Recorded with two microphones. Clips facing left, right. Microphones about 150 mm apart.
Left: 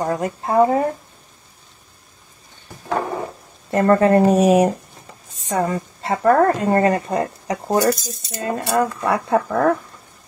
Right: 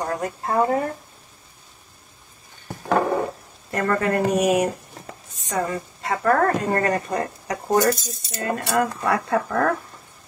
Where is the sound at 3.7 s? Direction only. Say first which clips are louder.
Left 8 dB; 30° left (ahead or behind).